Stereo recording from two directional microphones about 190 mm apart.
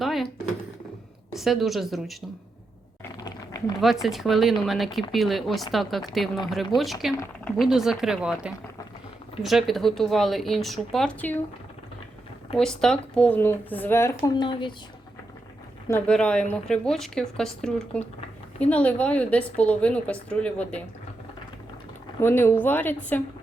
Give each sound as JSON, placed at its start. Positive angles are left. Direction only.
{"t": 0.0, "sound": "a sound", "side_deg": 0}
{"t": 1.3, "sound": "a woman's voice", "side_deg": 0}
{"t": 3.2, "sound": "a sound", "side_deg": 20}
{"t": 4.0, "sound": "a woman's voice", "side_deg": 0}
{"t": 12.5, "sound": "speech", "side_deg": 5}
{"t": 15.9, "sound": "a woman's voice", "side_deg": 5}
{"t": 22.2, "sound": "speech", "side_deg": 10}